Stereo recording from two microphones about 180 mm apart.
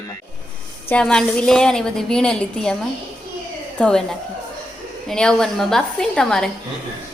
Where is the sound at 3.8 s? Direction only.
5° left (ahead or behind).